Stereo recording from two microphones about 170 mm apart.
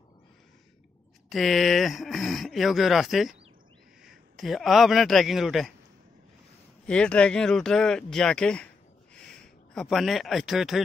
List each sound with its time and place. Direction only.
1.3 s speech: centre (ahead or behind)
6.9 s speech: 5° left (ahead or behind)